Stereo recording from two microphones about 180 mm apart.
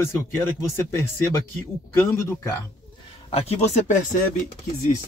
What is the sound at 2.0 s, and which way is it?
Speech, 15° left (ahead or behind).